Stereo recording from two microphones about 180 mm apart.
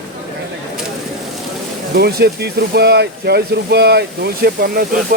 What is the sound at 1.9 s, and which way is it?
Speech, 60° right (ahead or behind).